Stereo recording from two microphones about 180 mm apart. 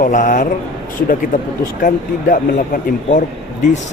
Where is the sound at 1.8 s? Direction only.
50° left (ahead or behind).